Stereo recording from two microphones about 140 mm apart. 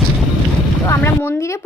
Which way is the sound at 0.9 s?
15° left (ahead or behind).